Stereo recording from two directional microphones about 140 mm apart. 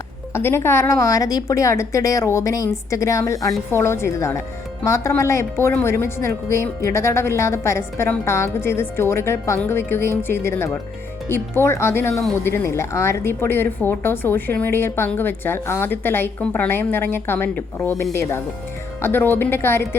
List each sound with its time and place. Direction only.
0.3 s a woman's voice: 15° left (ahead or behind)